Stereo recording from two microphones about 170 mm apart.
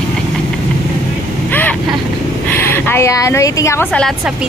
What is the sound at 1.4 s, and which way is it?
Vehicle, 10° left (ahead or behind).